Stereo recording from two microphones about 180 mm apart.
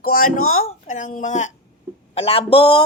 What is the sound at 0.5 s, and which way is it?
Speech, 40° left (ahead or behind).